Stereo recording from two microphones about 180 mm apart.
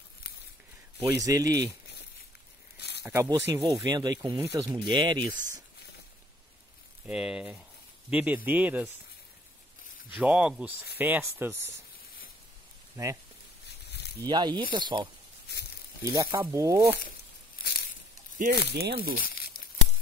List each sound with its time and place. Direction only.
0.9 s speech: 20° right (ahead or behind)
3.1 s speech: 15° right (ahead or behind)
3.6 s speech: 25° right (ahead or behind)
7.1 s speech: 5° right (ahead or behind)
10.0 s speech: 5° right (ahead or behind)
12.9 s speech: 15° right (ahead or behind)
14.2 s speech: 25° right (ahead or behind)
18.7 s speech: 65° right (ahead or behind)
19.2 s crumpling: 55° left (ahead or behind)